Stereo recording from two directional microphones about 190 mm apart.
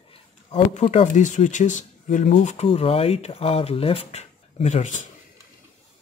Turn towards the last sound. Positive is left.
turn(degrees=40)  # may be behind; listen again after turning